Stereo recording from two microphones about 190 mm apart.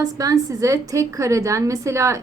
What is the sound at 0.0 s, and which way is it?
A woman's voice, 20° right (ahead or behind).